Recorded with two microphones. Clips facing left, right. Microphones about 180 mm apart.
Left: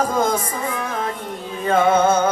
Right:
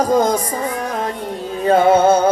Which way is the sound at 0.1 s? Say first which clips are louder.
Right 5 dB; 35° right (ahead or behind).